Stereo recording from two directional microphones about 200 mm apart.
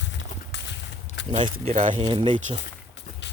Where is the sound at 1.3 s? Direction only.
25° right (ahead or behind).